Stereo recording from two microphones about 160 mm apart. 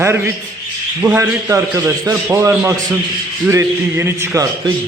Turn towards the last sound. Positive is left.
turn(degrees=-15)  # may be behind; listen again after turning